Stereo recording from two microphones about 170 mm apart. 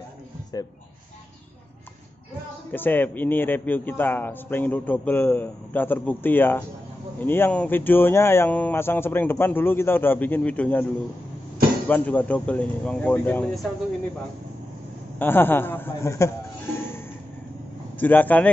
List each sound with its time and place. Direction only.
0.5 s speech: 20° left (ahead or behind)
2.7 s a man's voice: 10° left (ahead or behind)
11.9 s a man's voice: 10° left (ahead or behind)
15.1 s a man's voice: 10° left (ahead or behind)